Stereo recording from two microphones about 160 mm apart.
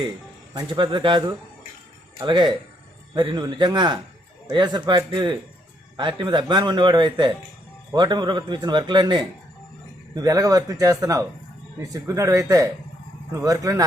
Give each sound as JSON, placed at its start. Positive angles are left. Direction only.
{"t": 0.5, "sound": "speech", "side_deg": -30}